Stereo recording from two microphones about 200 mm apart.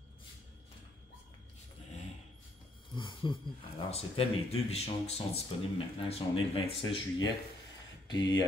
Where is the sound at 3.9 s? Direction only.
30° left (ahead or behind).